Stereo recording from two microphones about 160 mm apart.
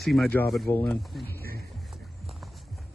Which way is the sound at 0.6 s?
10° left (ahead or behind).